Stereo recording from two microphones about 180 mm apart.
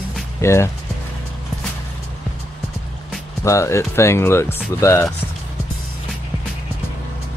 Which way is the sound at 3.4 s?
15° left (ahead or behind).